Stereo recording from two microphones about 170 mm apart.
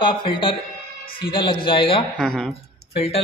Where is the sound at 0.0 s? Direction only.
30° left (ahead or behind).